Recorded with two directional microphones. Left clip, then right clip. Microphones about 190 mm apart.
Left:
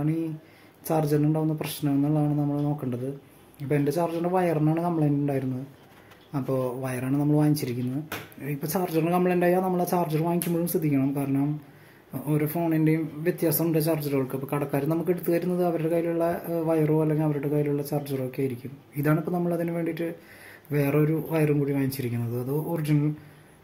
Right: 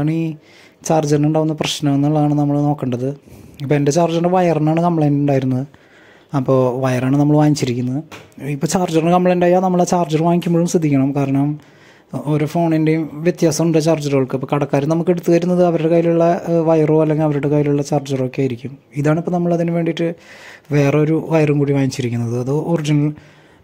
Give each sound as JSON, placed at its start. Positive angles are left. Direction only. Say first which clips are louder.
{"t": 0.0, "sound": "speech", "louder": "right 8 dB", "side_deg": -35}